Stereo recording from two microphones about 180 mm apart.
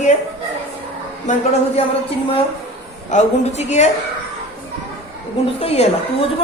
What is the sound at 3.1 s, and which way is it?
Speech, 40° left (ahead or behind).